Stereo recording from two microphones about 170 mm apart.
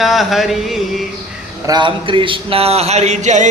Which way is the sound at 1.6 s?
25° right (ahead or behind).